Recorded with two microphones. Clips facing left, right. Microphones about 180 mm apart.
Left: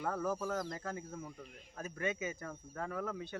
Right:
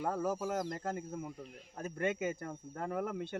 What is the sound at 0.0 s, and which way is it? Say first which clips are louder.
Speech: right 2 dB; 15° right (ahead or behind).